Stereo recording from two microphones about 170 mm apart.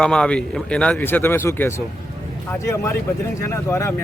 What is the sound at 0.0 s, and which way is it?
Speech, 5° left (ahead or behind).